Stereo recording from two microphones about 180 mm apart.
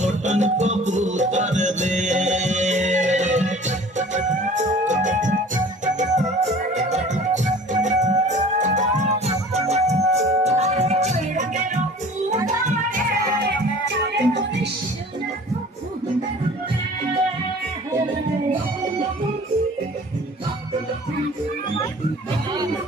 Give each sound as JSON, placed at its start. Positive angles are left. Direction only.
{"t": 0.0, "sound": "music", "side_deg": -40}
{"t": 14.0, "sound": "music", "side_deg": -75}